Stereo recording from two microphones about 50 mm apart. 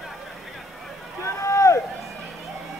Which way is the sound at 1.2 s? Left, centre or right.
Left.